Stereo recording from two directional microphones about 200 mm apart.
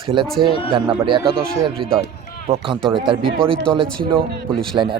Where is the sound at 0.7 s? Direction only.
25° right (ahead or behind).